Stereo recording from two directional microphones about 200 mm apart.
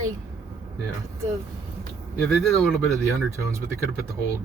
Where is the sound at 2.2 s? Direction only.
Centre (ahead or behind).